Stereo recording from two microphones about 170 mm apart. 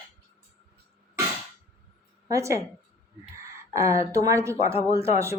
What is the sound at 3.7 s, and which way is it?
Speech, 15° right (ahead or behind).